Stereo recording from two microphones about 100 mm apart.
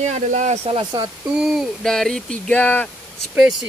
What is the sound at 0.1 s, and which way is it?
Speech, 90° right.